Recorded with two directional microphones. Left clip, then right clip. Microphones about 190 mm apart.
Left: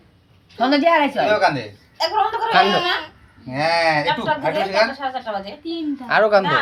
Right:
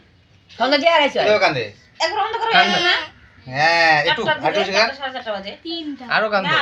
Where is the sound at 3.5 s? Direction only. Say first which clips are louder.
Right 3 dB; 40° right (ahead or behind).